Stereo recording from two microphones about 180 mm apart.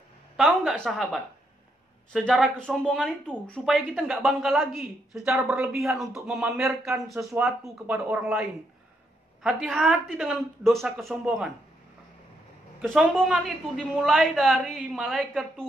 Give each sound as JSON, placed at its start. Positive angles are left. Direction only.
{"t": 0.4, "sound": "speech", "side_deg": 0}
{"t": 9.4, "sound": "speech", "side_deg": -5}
{"t": 12.8, "sound": "speech", "side_deg": 0}